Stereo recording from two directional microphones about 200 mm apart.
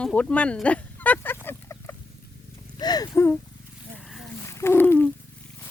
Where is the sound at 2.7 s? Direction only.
20° left (ahead or behind).